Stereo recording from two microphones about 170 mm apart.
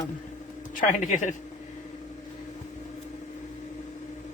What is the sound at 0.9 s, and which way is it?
Speech, 45° left (ahead or behind).